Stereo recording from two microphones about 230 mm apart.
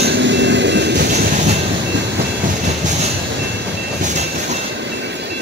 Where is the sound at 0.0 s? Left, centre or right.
Right.